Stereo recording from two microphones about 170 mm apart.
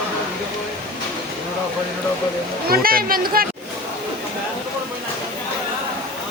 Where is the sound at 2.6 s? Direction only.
60° right (ahead or behind).